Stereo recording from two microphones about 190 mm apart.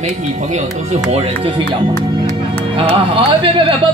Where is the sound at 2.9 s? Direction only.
30° right (ahead or behind).